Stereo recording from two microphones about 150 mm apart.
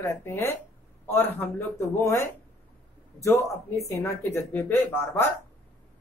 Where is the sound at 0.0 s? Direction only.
15° left (ahead or behind).